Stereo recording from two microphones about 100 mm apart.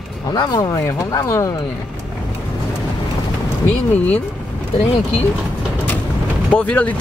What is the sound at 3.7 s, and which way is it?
Speech, 15° left (ahead or behind).